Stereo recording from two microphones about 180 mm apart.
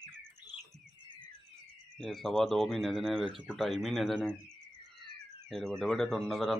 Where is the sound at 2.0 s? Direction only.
Centre (ahead or behind).